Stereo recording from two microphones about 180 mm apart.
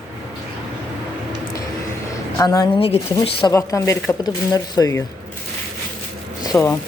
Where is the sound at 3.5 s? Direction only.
15° left (ahead or behind).